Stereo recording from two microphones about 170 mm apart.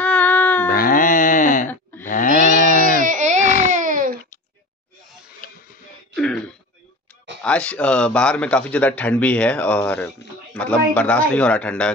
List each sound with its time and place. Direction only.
0.0 s a sound: 10° left (ahead or behind)
0.7 s music: 60° left (ahead or behind)
2.0 s livestock: 50° left (ahead or behind)
3.0 s baby cry: 50° right (ahead or behind)
3.4 s baby cry: 55° left (ahead or behind)
3.7 s baby cry: 50° right (ahead or behind)
5.4 s a sound: 55° left (ahead or behind)
6.1 s throat clearing: 5° left (ahead or behind)
7.4 s a man's voice: 5° left (ahead or behind)